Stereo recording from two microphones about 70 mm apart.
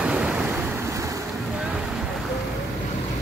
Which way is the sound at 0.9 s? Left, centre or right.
Right.